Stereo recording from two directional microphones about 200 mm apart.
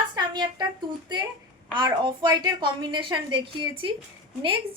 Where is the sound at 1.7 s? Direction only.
20° right (ahead or behind).